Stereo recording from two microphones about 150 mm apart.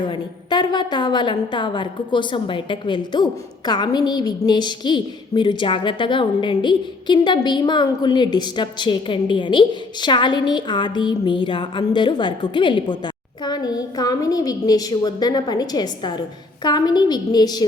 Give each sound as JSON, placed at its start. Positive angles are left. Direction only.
{"t": 0.0, "sound": "a woman's voice", "side_deg": 30}